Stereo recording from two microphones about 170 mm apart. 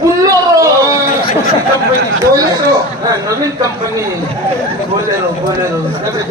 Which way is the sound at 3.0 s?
20° right (ahead or behind).